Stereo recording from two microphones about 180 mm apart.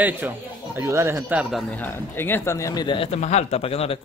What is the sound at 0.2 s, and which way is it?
Speech, 10° right (ahead or behind).